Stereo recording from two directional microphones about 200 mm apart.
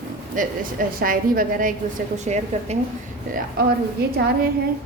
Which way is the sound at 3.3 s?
45° right (ahead or behind).